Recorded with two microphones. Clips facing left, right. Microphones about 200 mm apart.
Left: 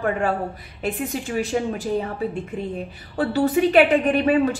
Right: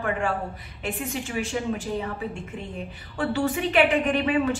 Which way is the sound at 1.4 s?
35° left (ahead or behind).